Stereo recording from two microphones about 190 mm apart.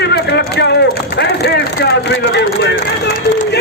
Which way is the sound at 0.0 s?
60° left (ahead or behind).